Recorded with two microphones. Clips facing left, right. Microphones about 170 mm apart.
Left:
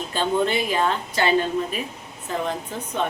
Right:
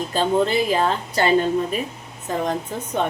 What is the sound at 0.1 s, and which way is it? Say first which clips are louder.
A woman's voice: right 2 dB; 35° right (ahead or behind).